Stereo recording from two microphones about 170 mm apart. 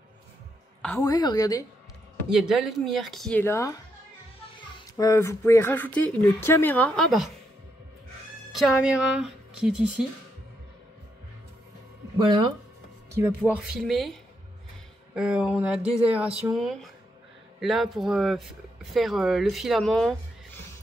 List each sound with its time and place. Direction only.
0.8 s a woman's voice: 20° left (ahead or behind)
2.2 s speech: 5° right (ahead or behind)
3.4 s speech: 15° left (ahead or behind)
4.7 s speech: 20° left (ahead or behind); by 7.2 s centre (ahead or behind)
8.5 s speech: centre (ahead or behind)
12.2 s speech: 25° right (ahead or behind)
13.5 s speech: 5° right (ahead or behind)
15.1 s speech: 5° right (ahead or behind)